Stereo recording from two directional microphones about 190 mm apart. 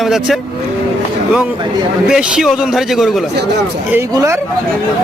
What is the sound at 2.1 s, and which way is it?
Speech, 5° right (ahead or behind).